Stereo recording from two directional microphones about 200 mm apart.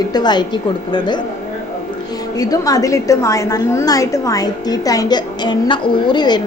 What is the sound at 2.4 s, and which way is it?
A woman's voice, 20° left (ahead or behind).